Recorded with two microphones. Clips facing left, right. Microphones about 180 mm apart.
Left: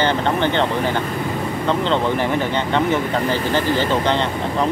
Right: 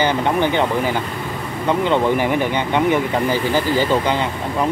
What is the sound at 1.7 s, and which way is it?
Speech, 10° right (ahead or behind).